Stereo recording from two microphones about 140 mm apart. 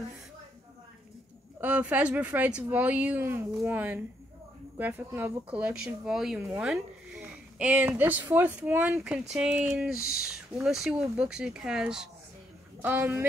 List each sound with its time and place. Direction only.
1.6 s speech: 10° right (ahead or behind)
12.8 s speech: 15° right (ahead or behind)